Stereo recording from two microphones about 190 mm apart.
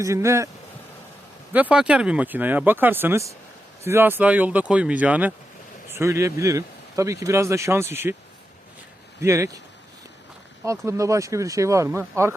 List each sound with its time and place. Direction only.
0.0 s speech: 15° right (ahead or behind)
1.5 s speech: 5° right (ahead or behind)
9.2 s speech: 15° right (ahead or behind)
10.6 s speech: 15° right (ahead or behind)